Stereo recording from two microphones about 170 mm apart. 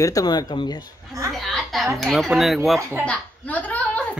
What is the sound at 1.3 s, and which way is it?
A woman's voice, centre (ahead or behind).